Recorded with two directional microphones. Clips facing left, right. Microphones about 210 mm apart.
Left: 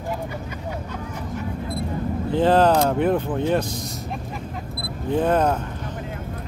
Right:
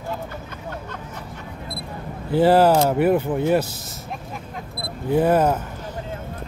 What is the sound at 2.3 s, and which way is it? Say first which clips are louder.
Speech: right 2 dB; 10° right (ahead or behind).